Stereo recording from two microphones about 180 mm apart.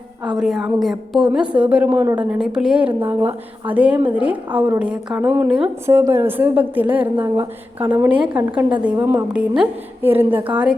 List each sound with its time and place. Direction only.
0.3 s a woman's voice: 5° right (ahead or behind)
7.9 s speech: 25° right (ahead or behind)
8.3 s a woman's voice: 10° right (ahead or behind)